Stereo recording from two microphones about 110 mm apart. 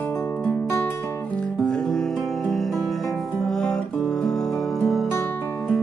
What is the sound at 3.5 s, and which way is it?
Guitar, 5° left (ahead or behind).